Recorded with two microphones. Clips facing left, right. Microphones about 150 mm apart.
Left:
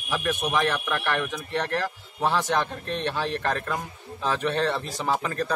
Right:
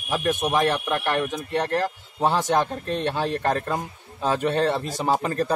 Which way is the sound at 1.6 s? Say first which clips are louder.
Right 4 dB; 40° right (ahead or behind).